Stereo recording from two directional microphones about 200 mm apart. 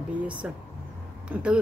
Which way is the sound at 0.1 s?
5° right (ahead or behind).